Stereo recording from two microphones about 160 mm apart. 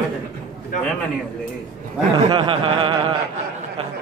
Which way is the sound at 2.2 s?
30° right (ahead or behind).